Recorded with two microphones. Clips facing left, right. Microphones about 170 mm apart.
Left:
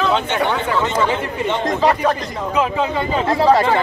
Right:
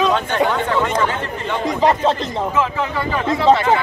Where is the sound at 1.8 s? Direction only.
20° right (ahead or behind).